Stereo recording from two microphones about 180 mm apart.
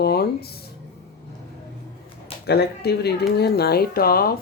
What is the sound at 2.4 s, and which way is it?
Speech, 65° left (ahead or behind).